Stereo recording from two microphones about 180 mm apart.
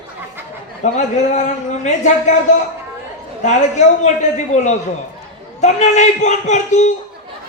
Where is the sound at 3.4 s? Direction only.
40° left (ahead or behind).